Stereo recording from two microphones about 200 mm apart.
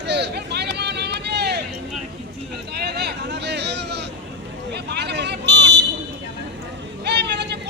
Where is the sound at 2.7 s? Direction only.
55° right (ahead or behind).